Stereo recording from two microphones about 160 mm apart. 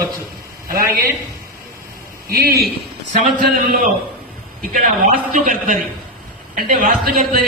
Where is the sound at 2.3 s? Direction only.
70° right (ahead or behind).